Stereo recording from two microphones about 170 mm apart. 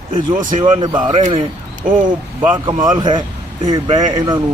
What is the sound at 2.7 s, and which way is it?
Speech, 25° right (ahead or behind).